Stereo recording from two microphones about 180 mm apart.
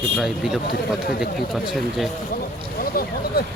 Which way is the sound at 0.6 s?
55° left (ahead or behind).